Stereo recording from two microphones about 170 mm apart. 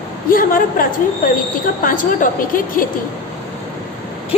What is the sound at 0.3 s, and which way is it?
A woman's voice, 55° left (ahead or behind).